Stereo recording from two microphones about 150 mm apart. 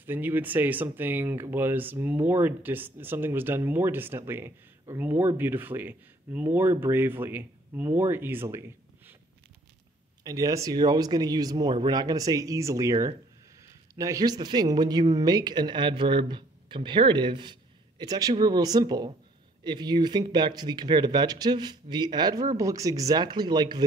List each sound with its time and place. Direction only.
0.0 s speech: 15° right (ahead or behind)
10.2 s speech: 25° right (ahead or behind)